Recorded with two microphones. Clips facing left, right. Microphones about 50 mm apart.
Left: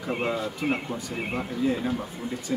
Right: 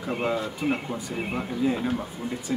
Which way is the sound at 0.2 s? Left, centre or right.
Centre.